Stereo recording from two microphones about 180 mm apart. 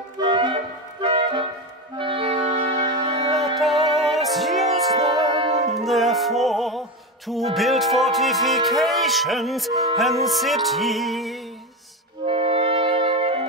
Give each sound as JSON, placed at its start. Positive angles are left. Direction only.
{"t": 0.2, "sound": "music", "side_deg": -25}
{"t": 2.0, "sound": "saxophone", "side_deg": -30}
{"t": 3.3, "sound": "music", "side_deg": 0}
{"t": 4.9, "sound": "music", "side_deg": -20}
{"t": 5.5, "sound": "music", "side_deg": -40}
{"t": 5.8, "sound": "music", "side_deg": 0}
{"t": 12.3, "sound": "music", "side_deg": -30}